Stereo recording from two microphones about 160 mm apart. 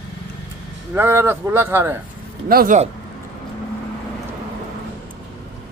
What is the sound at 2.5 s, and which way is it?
Speech, 65° right (ahead or behind).